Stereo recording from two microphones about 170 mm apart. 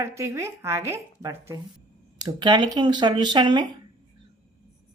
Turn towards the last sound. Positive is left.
turn(degrees=-25)  # may be behind; listen again after turning